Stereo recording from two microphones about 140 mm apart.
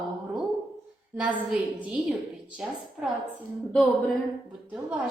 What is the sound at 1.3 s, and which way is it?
Speech, 5° right (ahead or behind).